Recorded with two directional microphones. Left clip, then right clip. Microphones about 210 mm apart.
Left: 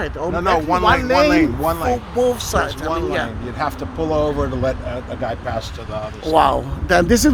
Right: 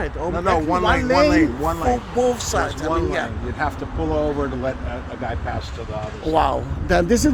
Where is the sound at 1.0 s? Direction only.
15° left (ahead or behind).